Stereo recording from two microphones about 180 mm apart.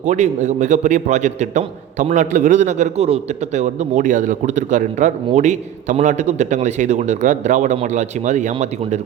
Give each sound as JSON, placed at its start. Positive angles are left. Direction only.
{"t": 0.0, "sound": "a man's voice", "side_deg": -40}